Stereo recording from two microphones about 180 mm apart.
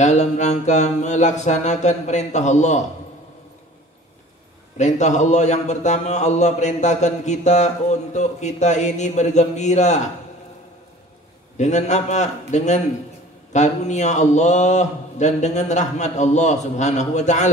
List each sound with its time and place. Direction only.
0.0 s speech: 40° left (ahead or behind)
4.7 s speech: 40° left (ahead or behind)
11.5 s speech: 40° left (ahead or behind)